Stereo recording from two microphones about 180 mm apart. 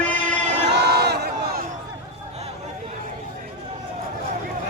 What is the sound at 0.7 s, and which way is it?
Crowd, 65° right (ahead or behind).